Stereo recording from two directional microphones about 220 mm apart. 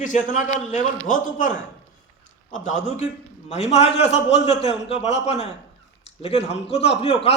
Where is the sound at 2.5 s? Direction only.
35° left (ahead or behind).